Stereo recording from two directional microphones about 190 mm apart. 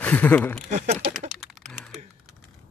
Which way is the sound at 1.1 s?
Centre (ahead or behind).